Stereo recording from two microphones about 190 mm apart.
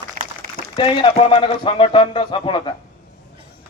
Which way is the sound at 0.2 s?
45° right (ahead or behind).